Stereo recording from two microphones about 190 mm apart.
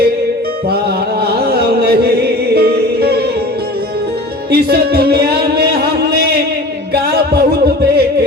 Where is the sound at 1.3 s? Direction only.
55° right (ahead or behind).